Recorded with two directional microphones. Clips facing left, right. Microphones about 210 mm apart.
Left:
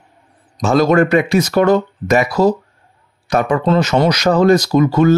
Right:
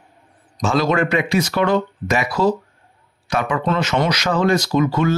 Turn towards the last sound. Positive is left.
turn(degrees=40)  # may be behind; listen again after turning